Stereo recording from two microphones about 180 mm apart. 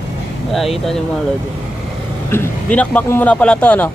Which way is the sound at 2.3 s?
10° left (ahead or behind).